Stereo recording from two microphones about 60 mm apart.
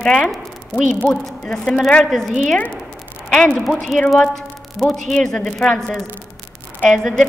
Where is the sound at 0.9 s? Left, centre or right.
Left.